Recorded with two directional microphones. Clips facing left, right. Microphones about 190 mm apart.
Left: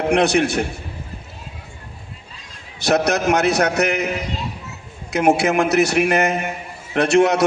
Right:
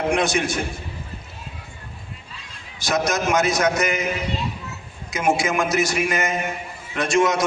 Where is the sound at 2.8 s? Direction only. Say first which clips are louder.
Left 5 dB; 65° left (ahead or behind).